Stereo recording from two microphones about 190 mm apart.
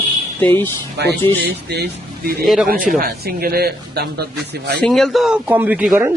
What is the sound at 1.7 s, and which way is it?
Speech, 60° right (ahead or behind).